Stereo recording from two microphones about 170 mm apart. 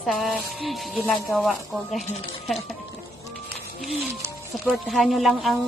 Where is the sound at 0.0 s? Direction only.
Centre (ahead or behind).